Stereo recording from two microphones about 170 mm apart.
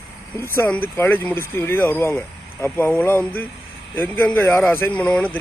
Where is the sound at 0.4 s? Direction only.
15° left (ahead or behind).